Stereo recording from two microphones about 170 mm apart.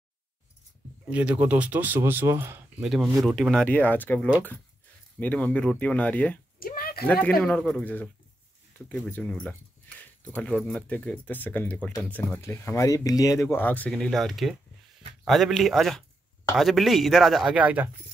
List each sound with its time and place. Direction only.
1.0 s speech: 10° right (ahead or behind)
2.8 s speech: centre (ahead or behind)
6.6 s a sound: 60° left (ahead or behind)
7.1 s speech: 10° left (ahead or behind); by 17.8 s 10° right (ahead or behind)